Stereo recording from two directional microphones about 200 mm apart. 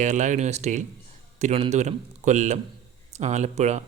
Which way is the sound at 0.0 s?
35° right (ahead or behind).